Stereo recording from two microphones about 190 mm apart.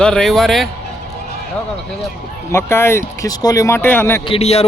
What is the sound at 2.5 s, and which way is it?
Speech, 15° left (ahead or behind).